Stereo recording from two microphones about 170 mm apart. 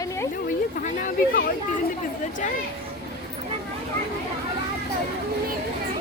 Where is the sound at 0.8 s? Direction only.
50° left (ahead or behind).